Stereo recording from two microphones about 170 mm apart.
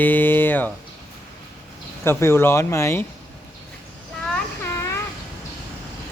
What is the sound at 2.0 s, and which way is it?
Speech, 15° left (ahead or behind).